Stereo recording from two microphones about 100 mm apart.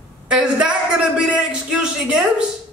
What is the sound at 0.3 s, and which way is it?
A man's voice, 10° right (ahead or behind).